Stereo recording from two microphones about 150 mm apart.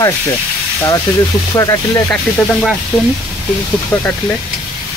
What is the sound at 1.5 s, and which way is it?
Speech, 20° left (ahead or behind).